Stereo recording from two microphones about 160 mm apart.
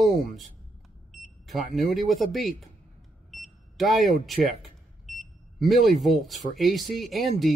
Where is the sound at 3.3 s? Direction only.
Centre (ahead or behind).